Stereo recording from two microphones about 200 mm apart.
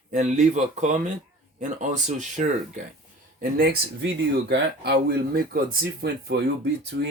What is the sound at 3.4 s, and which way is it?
Speech, 50° right (ahead or behind).